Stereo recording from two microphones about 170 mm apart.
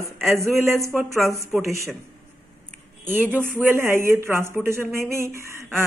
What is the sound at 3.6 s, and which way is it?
Speech, 15° right (ahead or behind).